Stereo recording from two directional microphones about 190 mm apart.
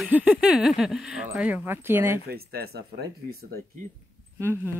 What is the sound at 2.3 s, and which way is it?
Speech, 55° right (ahead or behind).